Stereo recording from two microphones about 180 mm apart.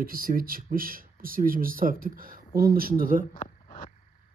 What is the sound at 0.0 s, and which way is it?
Speech, 55° right (ahead or behind).